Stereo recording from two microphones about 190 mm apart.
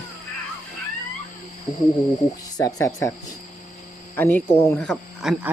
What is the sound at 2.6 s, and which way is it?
Speech, 15° left (ahead or behind).